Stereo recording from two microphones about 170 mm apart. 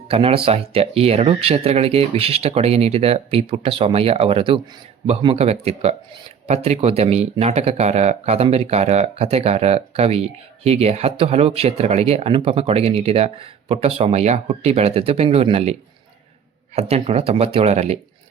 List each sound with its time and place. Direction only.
0.1 s speech: 35° right (ahead or behind)
16.7 s speech: 35° right (ahead or behind)